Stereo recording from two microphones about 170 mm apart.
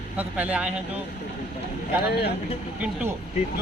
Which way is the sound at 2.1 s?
75° left (ahead or behind).